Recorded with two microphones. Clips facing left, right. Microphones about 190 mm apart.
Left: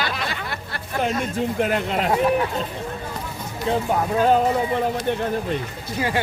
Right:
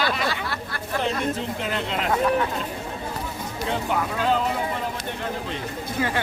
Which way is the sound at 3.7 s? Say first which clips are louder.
Left 5 dB; 40° left (ahead or behind).